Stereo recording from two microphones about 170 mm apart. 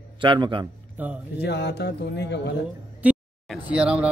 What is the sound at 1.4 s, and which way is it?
Speech, 80° left.